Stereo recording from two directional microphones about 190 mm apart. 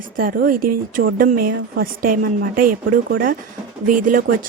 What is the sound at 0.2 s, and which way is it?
Speech, 45° right (ahead or behind).